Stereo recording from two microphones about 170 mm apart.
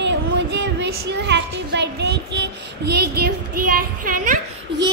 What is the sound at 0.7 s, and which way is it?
Child singing, 90° right.